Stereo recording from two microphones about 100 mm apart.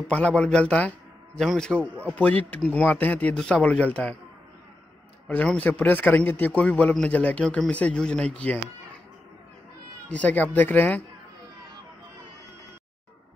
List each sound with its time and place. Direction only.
0.1 s a man's voice: 10° left (ahead or behind)
5.3 s a man's voice: 15° left (ahead or behind)
10.0 s a man's voice: 15° left (ahead or behind)